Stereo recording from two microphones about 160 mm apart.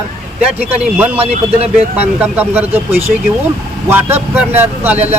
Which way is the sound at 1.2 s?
40° right (ahead or behind).